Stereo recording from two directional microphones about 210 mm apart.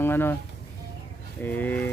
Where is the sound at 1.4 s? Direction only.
10° left (ahead or behind).